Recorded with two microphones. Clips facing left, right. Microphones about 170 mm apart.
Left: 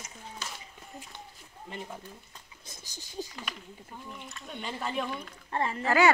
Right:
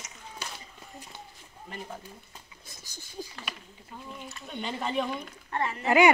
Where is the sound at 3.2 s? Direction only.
20° left (ahead or behind).